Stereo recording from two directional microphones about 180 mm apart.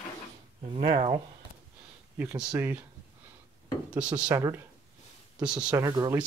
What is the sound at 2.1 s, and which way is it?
Speech, 10° right (ahead or behind).